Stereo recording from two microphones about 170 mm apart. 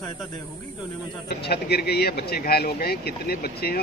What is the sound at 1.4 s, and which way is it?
Speech, 70° left (ahead or behind).